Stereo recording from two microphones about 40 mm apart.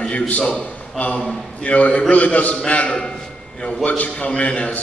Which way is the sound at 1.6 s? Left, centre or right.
Left.